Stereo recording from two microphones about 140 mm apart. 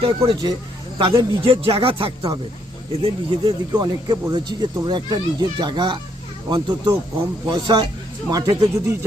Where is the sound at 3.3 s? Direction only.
30° right (ahead or behind).